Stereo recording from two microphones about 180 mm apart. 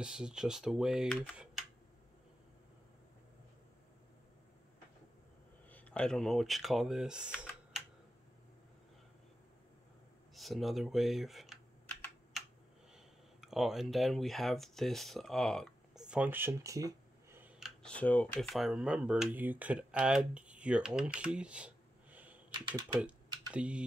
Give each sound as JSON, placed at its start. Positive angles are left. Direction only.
{"t": 0.0, "sound": "speech", "side_deg": -5}
{"t": 5.7, "sound": "speech", "side_deg": 10}
{"t": 10.3, "sound": "speech", "side_deg": 0}
{"t": 12.9, "sound": "speech", "side_deg": 0}
{"t": 17.6, "sound": "speech", "side_deg": 0}
{"t": 22.5, "sound": "speech", "side_deg": -25}
{"t": 22.9, "sound": "typing", "side_deg": -5}